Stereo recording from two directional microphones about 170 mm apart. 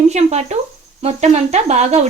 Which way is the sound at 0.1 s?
40° right (ahead or behind).